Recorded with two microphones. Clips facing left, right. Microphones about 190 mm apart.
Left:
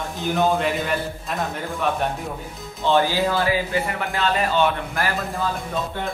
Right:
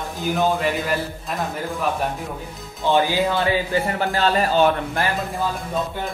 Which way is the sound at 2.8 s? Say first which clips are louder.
Even; 15° right (ahead or behind).